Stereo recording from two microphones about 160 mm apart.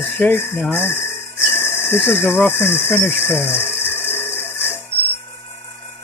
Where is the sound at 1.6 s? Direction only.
15° left (ahead or behind).